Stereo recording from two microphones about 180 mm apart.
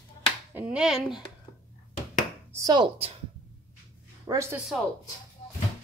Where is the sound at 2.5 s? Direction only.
20° right (ahead or behind).